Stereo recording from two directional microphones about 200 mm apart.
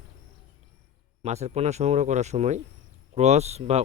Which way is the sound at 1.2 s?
35° right (ahead or behind).